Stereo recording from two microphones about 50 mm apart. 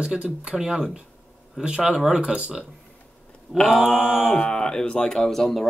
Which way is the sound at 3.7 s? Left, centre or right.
Centre.